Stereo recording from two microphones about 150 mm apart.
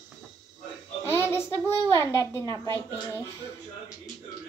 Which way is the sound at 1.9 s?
20° left (ahead or behind).